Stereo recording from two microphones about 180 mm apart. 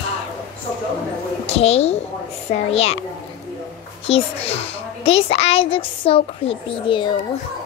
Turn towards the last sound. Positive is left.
turn(degrees=30)  # may be behind; listen again after turning